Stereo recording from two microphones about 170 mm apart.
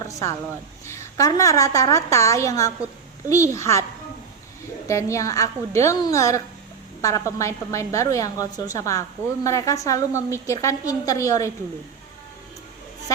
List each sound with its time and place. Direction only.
0.1 s a woman's voice: 20° left (ahead or behind)
4.9 s a woman's voice: 20° left (ahead or behind)
13.1 s speech: 20° left (ahead or behind)